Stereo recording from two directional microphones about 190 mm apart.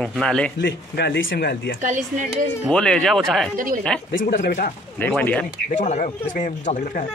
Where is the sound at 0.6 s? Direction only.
65° left (ahead or behind).